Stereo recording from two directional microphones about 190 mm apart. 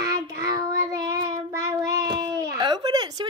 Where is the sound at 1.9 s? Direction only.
15° right (ahead or behind).